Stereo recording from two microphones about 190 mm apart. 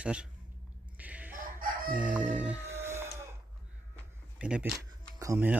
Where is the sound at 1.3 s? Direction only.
50° right (ahead or behind).